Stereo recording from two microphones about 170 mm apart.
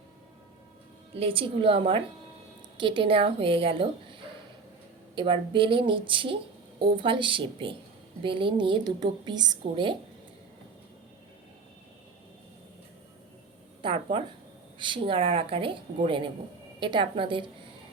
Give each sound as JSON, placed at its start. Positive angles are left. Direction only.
{"t": 1.1, "sound": "a woman's voice", "side_deg": -30}
{"t": 13.8, "sound": "a woman's voice", "side_deg": -30}